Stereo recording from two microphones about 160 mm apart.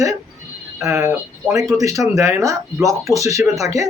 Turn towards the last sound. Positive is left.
turn(degrees=-20)  # may be behind; listen again after turning